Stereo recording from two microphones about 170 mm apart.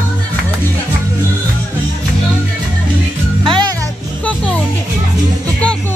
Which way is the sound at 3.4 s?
30° right (ahead or behind).